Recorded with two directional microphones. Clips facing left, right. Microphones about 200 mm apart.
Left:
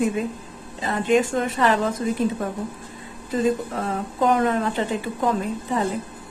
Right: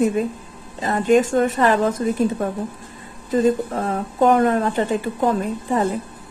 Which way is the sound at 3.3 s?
45° right (ahead or behind).